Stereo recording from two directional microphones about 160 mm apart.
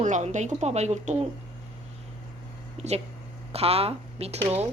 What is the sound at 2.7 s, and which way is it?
Speech, 45° right (ahead or behind).